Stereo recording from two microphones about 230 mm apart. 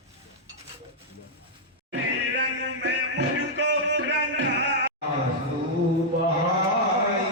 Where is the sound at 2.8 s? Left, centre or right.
Right.